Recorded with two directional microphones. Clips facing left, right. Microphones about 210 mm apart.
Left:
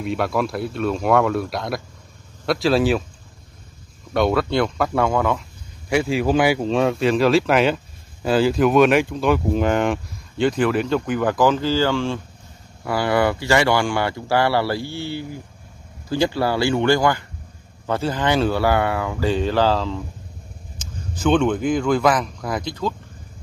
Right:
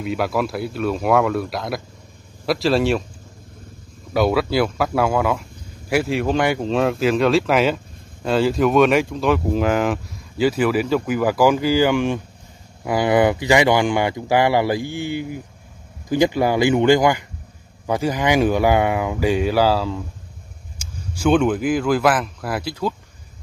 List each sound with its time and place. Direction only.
0.0 s speech: centre (ahead or behind)
4.1 s speech: 5° right (ahead or behind)